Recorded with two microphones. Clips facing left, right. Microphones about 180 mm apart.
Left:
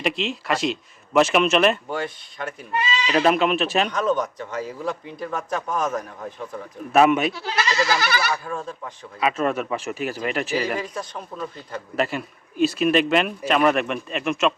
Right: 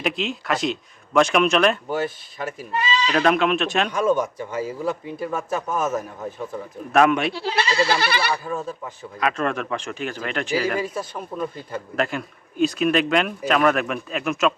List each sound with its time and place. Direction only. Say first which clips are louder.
0.0 s speech: even; centre (ahead or behind)
3.9 s speech: right 2 dB; 10° right (ahead or behind)
6.9 s speech: left 1 dB; 5° left (ahead or behind)
7.3 s goat: right 2 dB; 30° right (ahead or behind)
8.4 s speech: right 2 dB; 5° right (ahead or behind)
10.8 s speech: right 3 dB; 5° right (ahead or behind)
11.9 s speech: left 1 dB; 5° left (ahead or behind)